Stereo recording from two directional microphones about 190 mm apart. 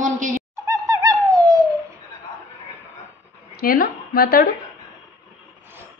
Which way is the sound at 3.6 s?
50° left (ahead or behind).